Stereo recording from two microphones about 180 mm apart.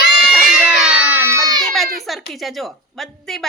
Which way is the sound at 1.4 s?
20° right (ahead or behind).